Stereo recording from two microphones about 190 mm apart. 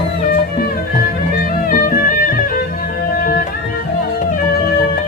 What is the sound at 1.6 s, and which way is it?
Music, 45° left (ahead or behind).